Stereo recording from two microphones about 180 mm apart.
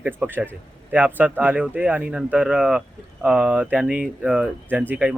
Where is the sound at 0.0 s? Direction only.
10° right (ahead or behind).